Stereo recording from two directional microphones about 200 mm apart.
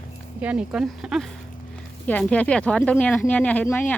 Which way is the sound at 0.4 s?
5° right (ahead or behind).